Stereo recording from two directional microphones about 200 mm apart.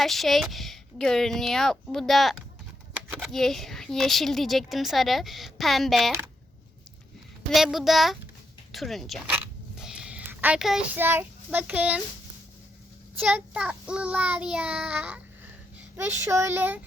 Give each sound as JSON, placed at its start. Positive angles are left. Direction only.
{"t": 0.0, "sound": "speech", "side_deg": 0}
{"t": 7.5, "sound": "speech", "side_deg": 0}
{"t": 13.1, "sound": "speech", "side_deg": -5}